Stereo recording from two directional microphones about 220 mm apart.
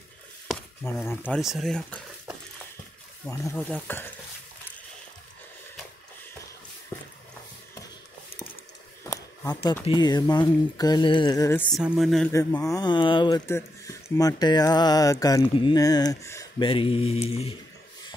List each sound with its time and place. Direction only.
1.2 s speech: centre (ahead or behind)
6.9 s a sound: 15° left (ahead or behind)
9.1 s a sound: 10° left (ahead or behind)
9.8 s speech: 20° left (ahead or behind)
11.7 s speech: centre (ahead or behind)
12.3 s speech: 15° left (ahead or behind)